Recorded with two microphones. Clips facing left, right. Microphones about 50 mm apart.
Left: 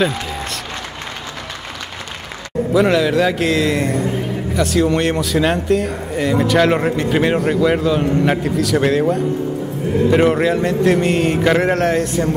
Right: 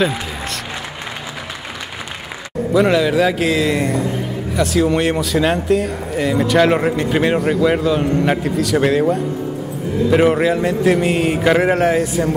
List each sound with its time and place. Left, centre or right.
2.7 s a man's voice: centre